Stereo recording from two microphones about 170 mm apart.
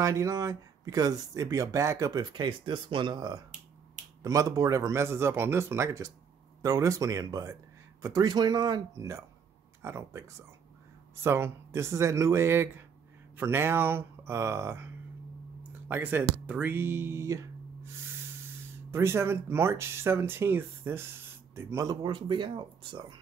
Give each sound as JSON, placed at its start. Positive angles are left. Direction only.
{"t": 0.0, "sound": "speech", "side_deg": -20}
{"t": 11.2, "sound": "speech", "side_deg": -15}
{"t": 15.9, "sound": "speech", "side_deg": -10}